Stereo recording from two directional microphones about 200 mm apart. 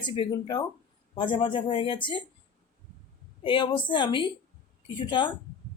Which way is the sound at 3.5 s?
25° left (ahead or behind).